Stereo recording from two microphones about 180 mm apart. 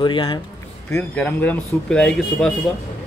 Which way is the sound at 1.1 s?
10° left (ahead or behind).